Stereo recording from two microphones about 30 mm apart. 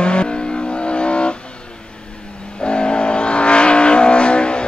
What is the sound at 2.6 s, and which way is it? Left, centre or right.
Vehicle, left.